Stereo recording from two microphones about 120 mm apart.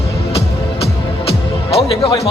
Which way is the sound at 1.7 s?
50° left (ahead or behind).